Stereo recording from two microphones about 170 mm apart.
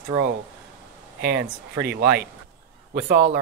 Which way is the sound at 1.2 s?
80° right.